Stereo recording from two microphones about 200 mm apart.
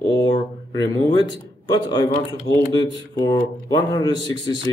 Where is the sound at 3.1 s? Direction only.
20° left (ahead or behind).